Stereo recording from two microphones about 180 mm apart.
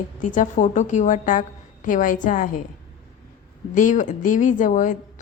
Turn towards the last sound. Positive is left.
turn(degrees=45)  # may be behind; listen again after turning